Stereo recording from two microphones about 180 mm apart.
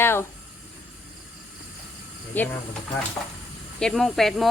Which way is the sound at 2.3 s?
10° left (ahead or behind).